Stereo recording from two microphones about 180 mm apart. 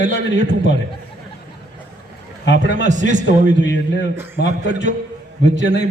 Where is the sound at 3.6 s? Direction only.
80° left.